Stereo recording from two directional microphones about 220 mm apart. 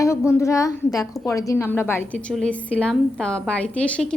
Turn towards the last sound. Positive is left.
turn(degrees=5)  # may be behind; listen again after turning